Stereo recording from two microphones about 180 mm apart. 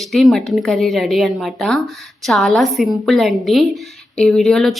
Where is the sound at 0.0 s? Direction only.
Centre (ahead or behind).